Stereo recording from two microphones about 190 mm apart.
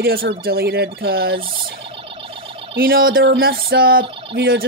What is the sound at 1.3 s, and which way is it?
Fowl, 30° right (ahead or behind).